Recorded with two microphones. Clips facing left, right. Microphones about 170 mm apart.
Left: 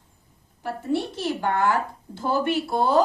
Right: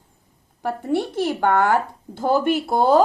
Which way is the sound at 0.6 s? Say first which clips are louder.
Right 3 dB; 55° right (ahead or behind).